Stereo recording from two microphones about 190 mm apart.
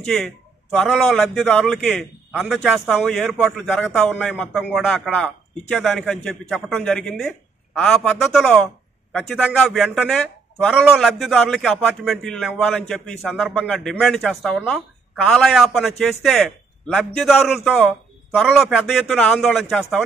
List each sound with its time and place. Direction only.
0.0 s a man's voice: centre (ahead or behind)